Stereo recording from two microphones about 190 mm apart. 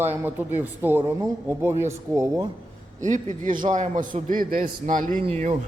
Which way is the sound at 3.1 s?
40° right (ahead or behind).